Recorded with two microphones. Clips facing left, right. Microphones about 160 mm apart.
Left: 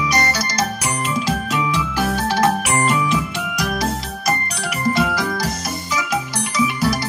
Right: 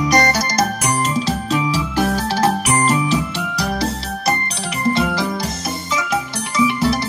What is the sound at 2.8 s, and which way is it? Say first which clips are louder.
Music: right 2 dB; 35° right (ahead or behind).